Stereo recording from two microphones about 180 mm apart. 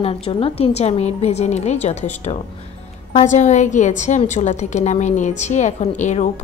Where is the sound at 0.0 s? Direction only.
30° left (ahead or behind).